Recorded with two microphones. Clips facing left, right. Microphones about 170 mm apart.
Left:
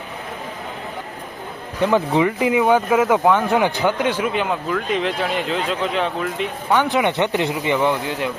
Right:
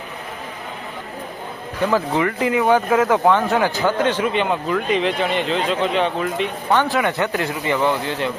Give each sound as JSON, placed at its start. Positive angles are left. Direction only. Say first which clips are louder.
{"t": 1.8, "sound": "speech", "louder": "left 2 dB", "side_deg": 20}
{"t": 6.7, "sound": "speech", "louder": "left 2 dB", "side_deg": 20}